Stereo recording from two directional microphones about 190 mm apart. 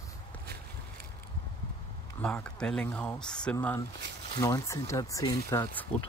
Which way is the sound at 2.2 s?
5° left (ahead or behind).